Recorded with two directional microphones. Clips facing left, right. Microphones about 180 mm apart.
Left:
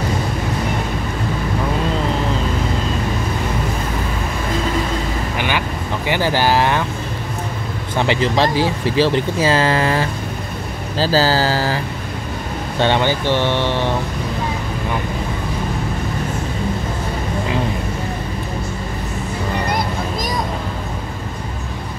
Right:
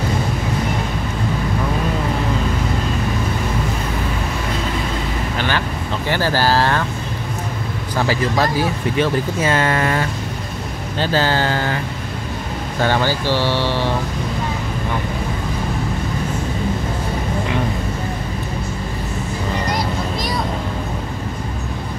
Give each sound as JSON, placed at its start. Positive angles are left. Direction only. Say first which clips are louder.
{"t": 6.0, "sound": "speech", "louder": "left 1 dB", "side_deg": 15}
{"t": 7.9, "sound": "speech", "louder": "left 2 dB", "side_deg": 25}
{"t": 19.7, "sound": "a sound", "louder": "even", "side_deg": 45}